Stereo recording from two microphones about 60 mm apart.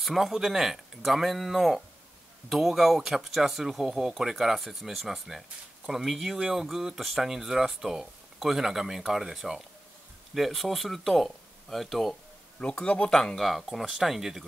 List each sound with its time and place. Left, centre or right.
0.0 s speech: centre
12.5 s speech: centre